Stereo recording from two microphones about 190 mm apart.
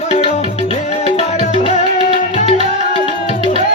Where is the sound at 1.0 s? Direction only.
35° left (ahead or behind).